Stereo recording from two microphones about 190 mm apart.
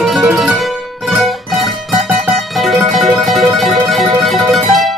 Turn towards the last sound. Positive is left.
turn(degrees=0)  # may be behind; listen again after turning